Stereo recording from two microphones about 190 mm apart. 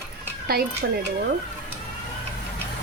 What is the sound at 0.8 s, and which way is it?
Speech, 75° right (ahead or behind).